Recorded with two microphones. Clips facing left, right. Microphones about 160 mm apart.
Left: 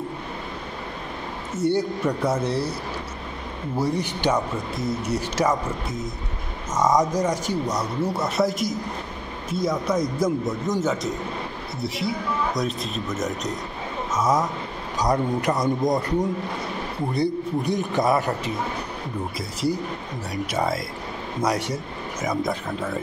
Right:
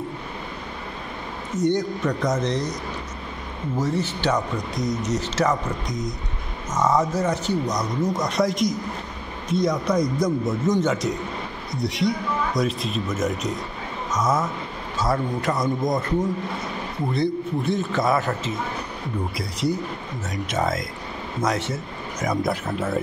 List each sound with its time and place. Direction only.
1.6 s speech: 10° left (ahead or behind)
3.7 s speech: 10° left (ahead or behind)
14.1 s speech: 10° left (ahead or behind)
17.2 s speech: 15° left (ahead or behind)
21.4 s a man's voice: 15° left (ahead or behind)
22.3 s speech: 5° right (ahead or behind)